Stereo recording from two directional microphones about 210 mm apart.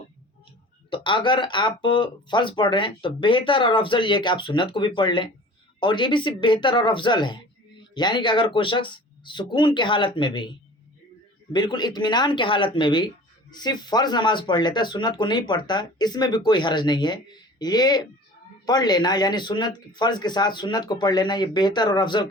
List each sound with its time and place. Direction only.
0.9 s speech: 25° left (ahead or behind)
11.5 s speech: 20° left (ahead or behind)